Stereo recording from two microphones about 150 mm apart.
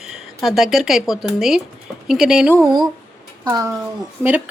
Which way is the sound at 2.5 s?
25° right (ahead or behind).